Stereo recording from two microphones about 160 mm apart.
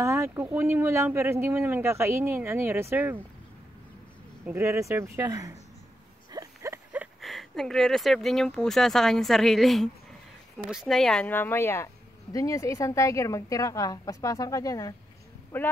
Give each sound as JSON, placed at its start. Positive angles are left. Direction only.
{"t": 0.0, "sound": "speech", "side_deg": -15}
{"t": 4.5, "sound": "a woman's voice", "side_deg": -15}